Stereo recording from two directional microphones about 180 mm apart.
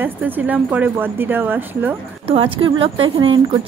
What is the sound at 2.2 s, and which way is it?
A woman's voice, 30° right (ahead or behind).